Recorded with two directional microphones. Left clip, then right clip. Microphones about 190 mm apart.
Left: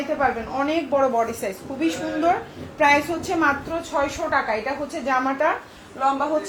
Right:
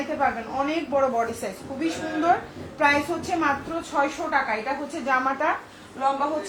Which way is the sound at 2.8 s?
35° left (ahead or behind).